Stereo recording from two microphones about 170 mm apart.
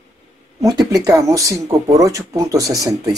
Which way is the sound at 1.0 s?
20° right (ahead or behind).